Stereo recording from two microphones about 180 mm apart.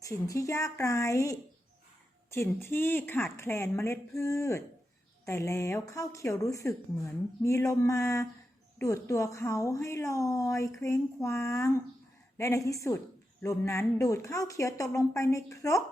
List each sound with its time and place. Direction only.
0.0 s a woman's voice: 15° left (ahead or behind)